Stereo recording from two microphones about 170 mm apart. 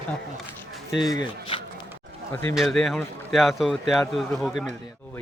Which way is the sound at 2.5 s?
Centre (ahead or behind).